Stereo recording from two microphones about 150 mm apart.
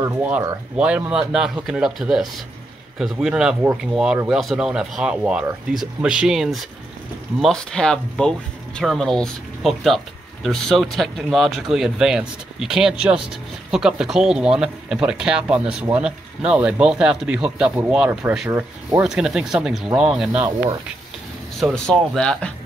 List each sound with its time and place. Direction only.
0.2 s speech: 10° right (ahead or behind)
21.5 s speech: 5° left (ahead or behind)